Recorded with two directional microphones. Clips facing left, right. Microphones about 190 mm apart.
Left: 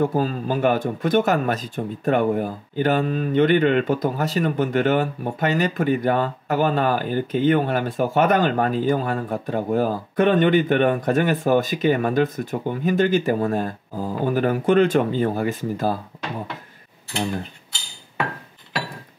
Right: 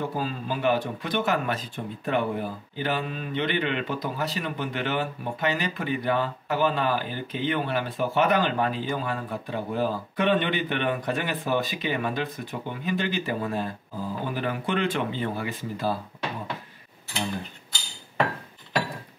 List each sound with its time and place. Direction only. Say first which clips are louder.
0.0 s speech: left 8 dB; 45° left (ahead or behind)